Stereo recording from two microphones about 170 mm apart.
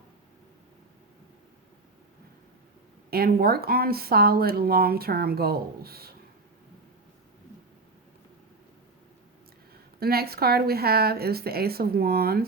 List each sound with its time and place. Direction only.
3.1 s speech: 65° right (ahead or behind)
10.0 s speech: 65° right (ahead or behind)